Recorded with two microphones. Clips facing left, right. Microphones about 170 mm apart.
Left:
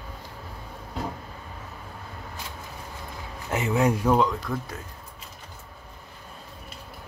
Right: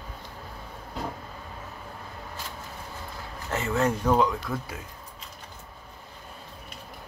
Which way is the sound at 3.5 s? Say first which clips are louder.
Left 2 dB; 15° left (ahead or behind).